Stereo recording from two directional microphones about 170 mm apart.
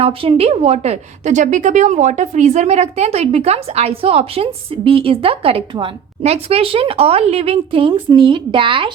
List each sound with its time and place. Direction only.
0.0 s a woman's voice: 35° right (ahead or behind)